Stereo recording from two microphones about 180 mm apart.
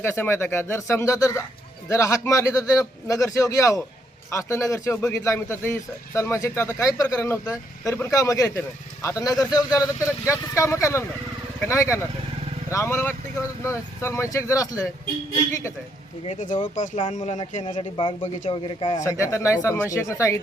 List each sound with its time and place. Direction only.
0.0 s a man's voice: 15° left (ahead or behind)
16.2 s speech: 40° left (ahead or behind)
17.7 s speech: 30° left (ahead or behind)
19.0 s a man's voice: 15° left (ahead or behind)